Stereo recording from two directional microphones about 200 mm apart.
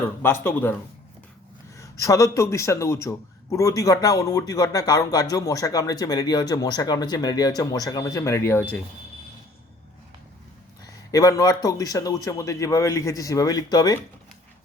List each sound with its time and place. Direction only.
0.2 s a man's voice: 10° left (ahead or behind)
1.7 s a man's voice: 15° left (ahead or behind)
11.1 s a man's voice: 15° left (ahead or behind)